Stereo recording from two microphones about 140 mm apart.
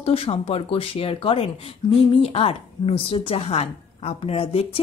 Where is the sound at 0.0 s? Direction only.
45° left (ahead or behind).